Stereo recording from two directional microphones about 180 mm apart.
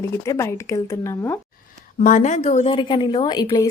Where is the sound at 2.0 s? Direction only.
45° left (ahead or behind); by 3.6 s 25° left (ahead or behind).